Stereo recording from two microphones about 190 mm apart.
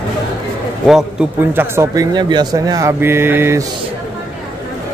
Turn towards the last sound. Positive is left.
turn(degrees=-15)  # may be behind; listen again after turning